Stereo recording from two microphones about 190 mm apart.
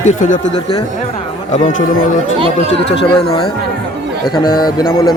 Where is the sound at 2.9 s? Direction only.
30° left (ahead or behind).